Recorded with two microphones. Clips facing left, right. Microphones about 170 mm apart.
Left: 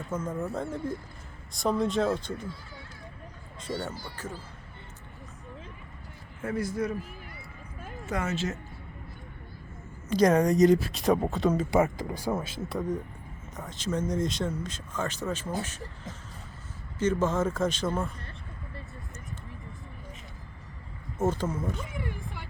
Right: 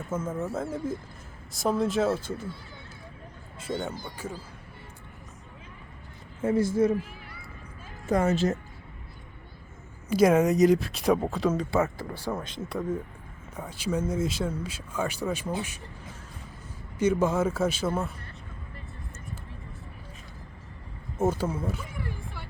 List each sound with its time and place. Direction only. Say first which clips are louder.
0.0 s speech: right 1 dB; 5° right (ahead or behind)
3.7 s speech: right 2 dB; 5° left (ahead or behind)
4.2 s speech: right 2 dB; 10° right (ahead or behind)
6.4 s a man's voice: right 7 dB; 25° right (ahead or behind)
8.0 s speech: right 7 dB; 35° right (ahead or behind)
10.1 s speech: right 1 dB; 5° right (ahead or behind)
11.7 s speech: left 2 dB; 15° left (ahead or behind); by 15.5 s 10° right (ahead or behind)
17.0 s speech: right 2 dB; 10° right (ahead or behind)
21.2 s speech: right 2 dB; 10° right (ahead or behind)